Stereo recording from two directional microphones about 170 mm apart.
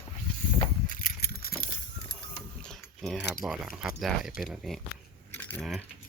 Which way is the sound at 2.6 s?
5° left (ahead or behind).